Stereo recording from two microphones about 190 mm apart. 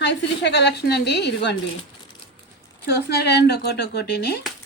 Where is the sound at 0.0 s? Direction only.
65° left (ahead or behind).